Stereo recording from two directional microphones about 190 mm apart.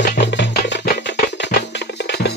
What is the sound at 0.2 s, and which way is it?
Music, 70° left (ahead or behind).